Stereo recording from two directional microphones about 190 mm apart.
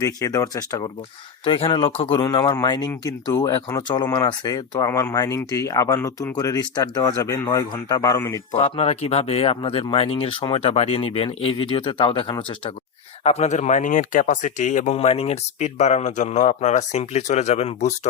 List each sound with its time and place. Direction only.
0.0 s speech: 20° left (ahead or behind)
8.5 s speech: 30° left (ahead or behind)